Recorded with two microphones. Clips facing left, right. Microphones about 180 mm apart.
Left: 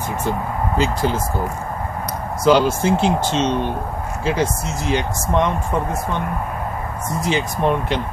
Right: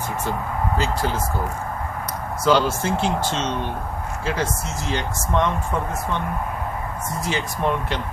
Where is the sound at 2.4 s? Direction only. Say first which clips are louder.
Left 4 dB; 15° left (ahead or behind).